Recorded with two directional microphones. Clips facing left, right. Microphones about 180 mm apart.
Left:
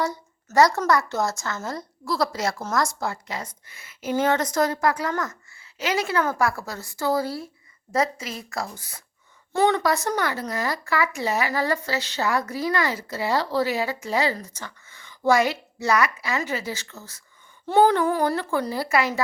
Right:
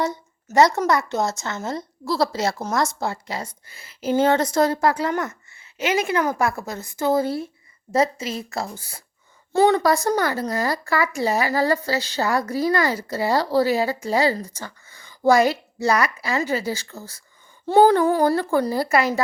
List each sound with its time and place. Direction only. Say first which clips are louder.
0.5 s a woman's voice: right 2 dB; 20° right (ahead or behind); by 19.2 s 40° right (ahead or behind)